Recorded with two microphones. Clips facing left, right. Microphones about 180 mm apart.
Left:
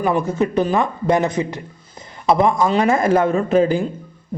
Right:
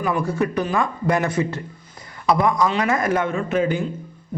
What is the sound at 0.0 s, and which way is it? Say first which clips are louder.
A man's voice: left 3 dB; 25° left (ahead or behind).